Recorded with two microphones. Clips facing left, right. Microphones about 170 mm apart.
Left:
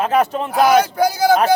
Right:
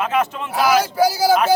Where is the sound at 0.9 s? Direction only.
5° right (ahead or behind).